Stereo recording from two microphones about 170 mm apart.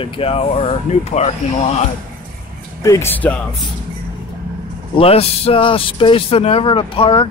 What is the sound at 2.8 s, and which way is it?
Speech, 15° left (ahead or behind).